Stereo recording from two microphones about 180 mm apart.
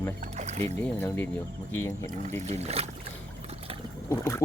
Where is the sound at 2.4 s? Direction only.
35° right (ahead or behind).